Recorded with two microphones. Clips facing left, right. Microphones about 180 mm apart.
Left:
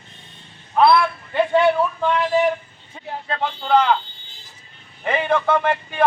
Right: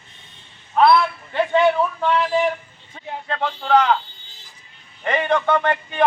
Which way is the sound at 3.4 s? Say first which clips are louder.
Even; 5° left (ahead or behind).